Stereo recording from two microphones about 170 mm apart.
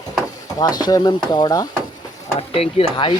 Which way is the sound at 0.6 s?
20° left (ahead or behind).